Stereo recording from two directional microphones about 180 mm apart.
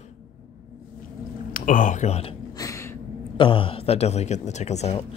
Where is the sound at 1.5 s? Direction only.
45° left (ahead or behind).